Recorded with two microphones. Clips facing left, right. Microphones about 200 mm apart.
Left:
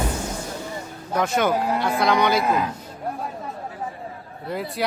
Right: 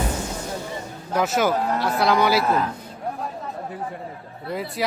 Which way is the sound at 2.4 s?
15° left (ahead or behind).